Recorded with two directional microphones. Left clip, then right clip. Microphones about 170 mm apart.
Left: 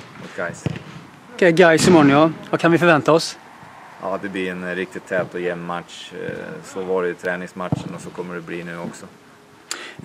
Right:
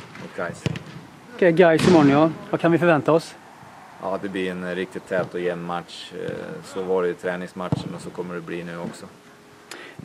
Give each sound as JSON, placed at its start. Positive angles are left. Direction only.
{"t": 0.4, "sound": "speech", "side_deg": 0}
{"t": 1.3, "sound": "speech", "side_deg": 35}
{"t": 4.0, "sound": "speech", "side_deg": 0}
{"t": 9.7, "sound": "tick-tock", "side_deg": 35}